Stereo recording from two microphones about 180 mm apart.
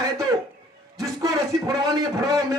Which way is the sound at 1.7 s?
20° right (ahead or behind).